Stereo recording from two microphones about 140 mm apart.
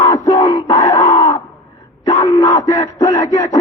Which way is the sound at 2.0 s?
25° left (ahead or behind).